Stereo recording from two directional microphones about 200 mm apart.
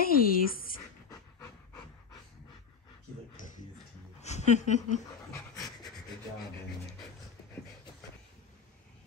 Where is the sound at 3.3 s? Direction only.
40° left (ahead or behind).